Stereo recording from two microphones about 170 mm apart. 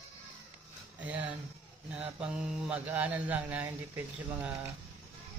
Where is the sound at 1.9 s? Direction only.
5° right (ahead or behind).